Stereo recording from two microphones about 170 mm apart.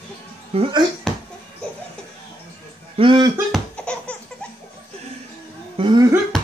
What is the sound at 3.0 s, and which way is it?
Speech, 30° right (ahead or behind).